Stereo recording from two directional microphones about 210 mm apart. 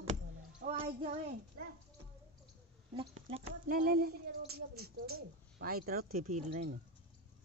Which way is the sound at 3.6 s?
40° right (ahead or behind).